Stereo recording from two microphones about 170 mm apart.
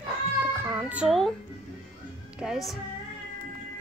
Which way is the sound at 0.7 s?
10° right (ahead or behind).